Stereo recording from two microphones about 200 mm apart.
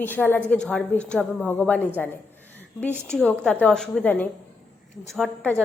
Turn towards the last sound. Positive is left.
turn(degrees=5)  # may be behind; listen again after turning